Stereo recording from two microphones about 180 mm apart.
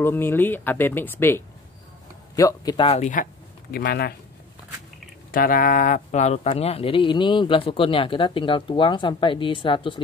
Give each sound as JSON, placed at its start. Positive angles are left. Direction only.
{"t": 0.0, "sound": "speech", "side_deg": 10}
{"t": 2.9, "sound": "speech", "side_deg": 45}
{"t": 3.7, "sound": "speech", "side_deg": 60}
{"t": 5.3, "sound": "speech", "side_deg": 50}